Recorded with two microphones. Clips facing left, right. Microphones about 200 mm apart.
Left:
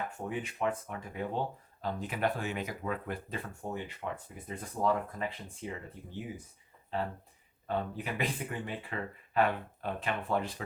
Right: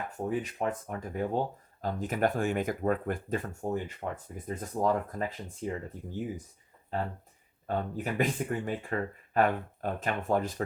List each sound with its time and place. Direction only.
0.2 s speech: 40° right (ahead or behind)
7.8 s speech: 45° right (ahead or behind)